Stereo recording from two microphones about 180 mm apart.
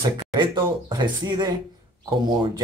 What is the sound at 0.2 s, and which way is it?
A man's voice, 25° right (ahead or behind).